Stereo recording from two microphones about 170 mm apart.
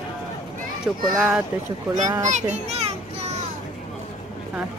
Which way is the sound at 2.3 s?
40° right (ahead or behind).